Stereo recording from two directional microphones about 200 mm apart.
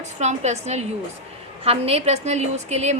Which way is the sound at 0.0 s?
35° right (ahead or behind).